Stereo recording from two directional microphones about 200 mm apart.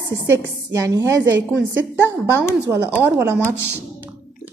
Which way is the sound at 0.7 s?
15° right (ahead or behind).